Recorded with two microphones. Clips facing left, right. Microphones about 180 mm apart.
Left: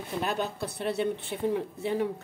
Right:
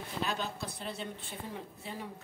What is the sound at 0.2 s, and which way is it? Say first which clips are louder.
A woman's voice: left 5 dB; 55° left (ahead or behind).